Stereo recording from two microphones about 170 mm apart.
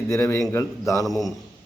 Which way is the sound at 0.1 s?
20° left (ahead or behind).